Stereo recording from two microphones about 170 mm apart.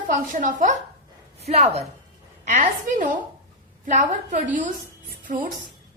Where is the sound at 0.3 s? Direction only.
50° right (ahead or behind).